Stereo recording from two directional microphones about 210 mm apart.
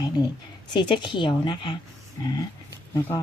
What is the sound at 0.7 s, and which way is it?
Speech, 20° left (ahead or behind).